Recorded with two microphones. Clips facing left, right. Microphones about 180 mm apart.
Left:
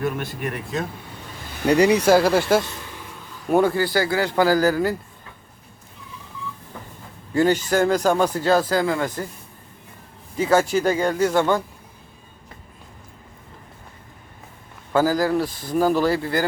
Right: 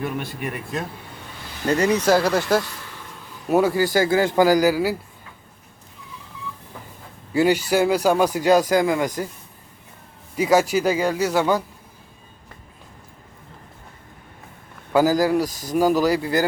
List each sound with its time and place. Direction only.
0.0 s speech: centre (ahead or behind)
1.6 s speech: 15° left (ahead or behind)
2.1 s speech: 5° left (ahead or behind)
2.6 s speech: 25° left (ahead or behind)
3.5 s speech: 10° right (ahead or behind)
3.9 s a man's voice: 20° right (ahead or behind)
7.3 s speech: 10° right (ahead or behind)
10.3 s speech: 10° right (ahead or behind)
14.9 s speech: 15° right (ahead or behind)
15.4 s speech: 40° right (ahead or behind)
15.7 s speech: 10° right (ahead or behind)